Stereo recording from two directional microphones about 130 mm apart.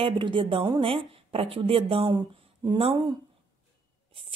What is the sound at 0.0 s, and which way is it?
A woman's voice, 40° right (ahead or behind).